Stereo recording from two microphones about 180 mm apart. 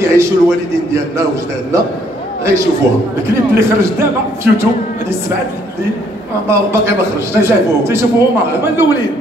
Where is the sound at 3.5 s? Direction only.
15° right (ahead or behind).